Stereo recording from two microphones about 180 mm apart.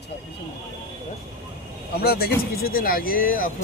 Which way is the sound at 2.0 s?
60° left (ahead or behind).